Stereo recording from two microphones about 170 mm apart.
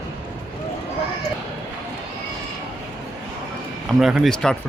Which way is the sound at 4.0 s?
Centre (ahead or behind).